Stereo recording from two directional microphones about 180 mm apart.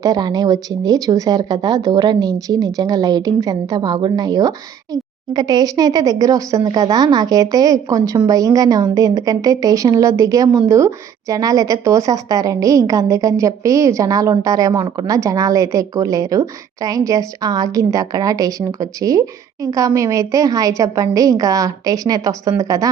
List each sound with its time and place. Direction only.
0.0 s a woman's voice: 20° right (ahead or behind)